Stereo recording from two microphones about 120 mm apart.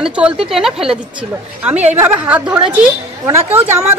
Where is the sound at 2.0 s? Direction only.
15° right (ahead or behind).